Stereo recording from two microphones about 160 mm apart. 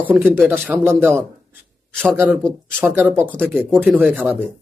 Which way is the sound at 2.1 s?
15° right (ahead or behind).